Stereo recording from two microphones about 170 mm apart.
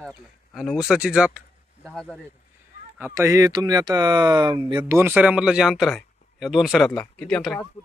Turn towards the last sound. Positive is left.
turn(degrees=5)  # may be behind; listen again after turning